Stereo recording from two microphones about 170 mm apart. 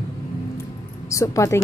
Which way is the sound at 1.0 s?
20° left (ahead or behind).